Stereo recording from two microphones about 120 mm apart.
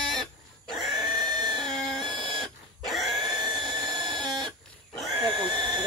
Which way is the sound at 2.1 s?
40° right (ahead or behind).